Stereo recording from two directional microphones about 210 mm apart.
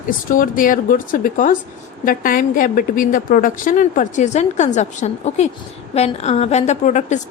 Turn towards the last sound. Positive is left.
turn(degrees=35)  # may be behind; listen again after turning